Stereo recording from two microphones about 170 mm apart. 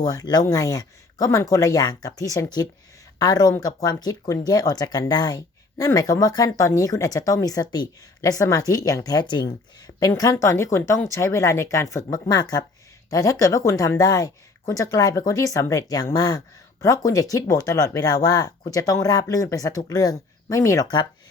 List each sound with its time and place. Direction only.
0.0 s speech: 20° left (ahead or behind)